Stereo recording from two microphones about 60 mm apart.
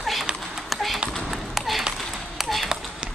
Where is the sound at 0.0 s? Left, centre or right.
Centre.